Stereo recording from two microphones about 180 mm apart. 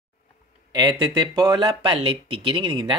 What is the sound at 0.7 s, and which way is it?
Speech, 25° right (ahead or behind).